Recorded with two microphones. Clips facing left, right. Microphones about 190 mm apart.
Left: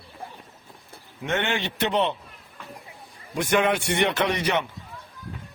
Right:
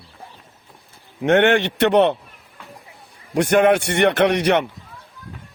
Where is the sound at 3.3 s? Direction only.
70° right (ahead or behind).